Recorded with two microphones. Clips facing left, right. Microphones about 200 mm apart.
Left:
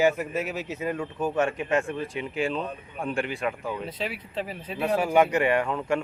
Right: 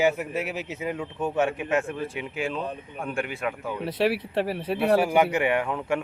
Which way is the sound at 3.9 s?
75° right (ahead or behind).